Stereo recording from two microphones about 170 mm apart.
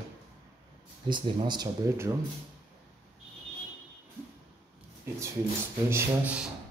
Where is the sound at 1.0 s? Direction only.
25° right (ahead or behind).